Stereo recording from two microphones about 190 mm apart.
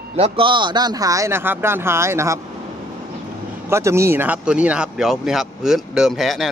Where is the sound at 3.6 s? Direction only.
15° right (ahead or behind).